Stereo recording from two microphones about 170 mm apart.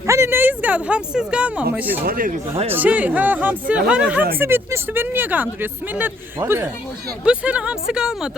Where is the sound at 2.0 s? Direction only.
55° right (ahead or behind).